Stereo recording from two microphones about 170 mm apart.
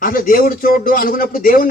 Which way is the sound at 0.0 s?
55° left (ahead or behind).